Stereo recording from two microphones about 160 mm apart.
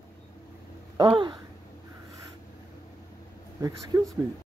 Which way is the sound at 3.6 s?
20° right (ahead or behind).